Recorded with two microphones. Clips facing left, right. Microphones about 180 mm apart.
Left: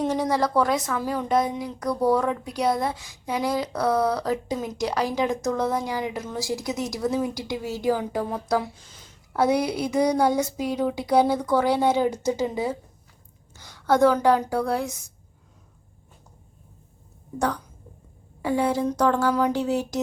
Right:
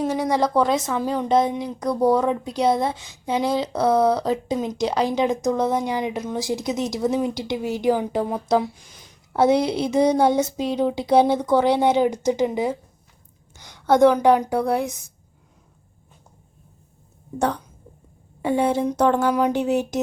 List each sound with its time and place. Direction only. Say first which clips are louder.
0.0 s a sound: right 1 dB; 10° right (ahead or behind)
0.3 s a woman's voice: right 5 dB; 20° right (ahead or behind)
18.4 s a woman's voice: right 3 dB; 25° right (ahead or behind)